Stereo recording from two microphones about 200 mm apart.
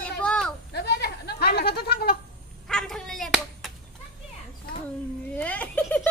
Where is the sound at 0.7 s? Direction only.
55° left (ahead or behind).